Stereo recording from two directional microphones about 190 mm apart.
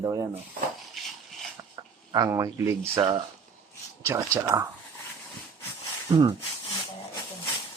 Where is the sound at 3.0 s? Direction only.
25° right (ahead or behind).